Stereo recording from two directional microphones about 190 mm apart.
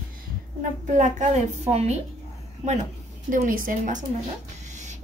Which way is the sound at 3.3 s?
45° right (ahead or behind).